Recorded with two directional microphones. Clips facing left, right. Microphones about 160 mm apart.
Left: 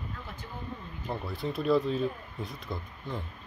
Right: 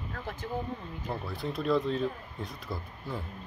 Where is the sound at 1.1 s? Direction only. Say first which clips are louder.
Left 1 dB; centre (ahead or behind).